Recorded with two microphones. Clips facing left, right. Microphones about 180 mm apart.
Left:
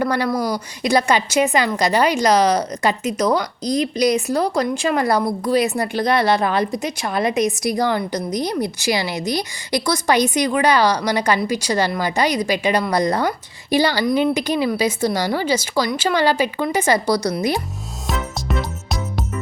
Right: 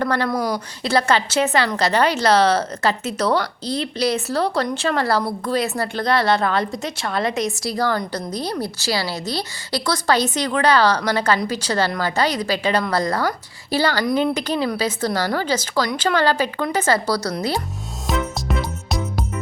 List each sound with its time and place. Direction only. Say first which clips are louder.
0.0 s a woman's voice: left 1 dB; 10° left (ahead or behind)
14.0 s speech: left 2 dB; centre (ahead or behind)
14.3 s a woman's voice: left 2 dB; 10° left (ahead or behind)
18.1 s music: right 1 dB; centre (ahead or behind)